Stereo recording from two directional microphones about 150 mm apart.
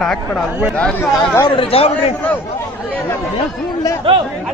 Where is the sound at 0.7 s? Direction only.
10° left (ahead or behind).